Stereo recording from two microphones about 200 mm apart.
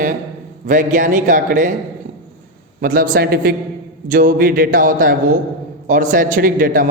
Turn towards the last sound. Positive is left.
turn(degrees=-45)  # may be behind; listen again after turning